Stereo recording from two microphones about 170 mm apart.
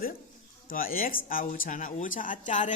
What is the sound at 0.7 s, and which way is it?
Speech, 55° left (ahead or behind).